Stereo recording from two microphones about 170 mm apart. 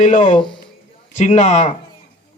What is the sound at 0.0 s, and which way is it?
A man's voice, 45° left (ahead or behind).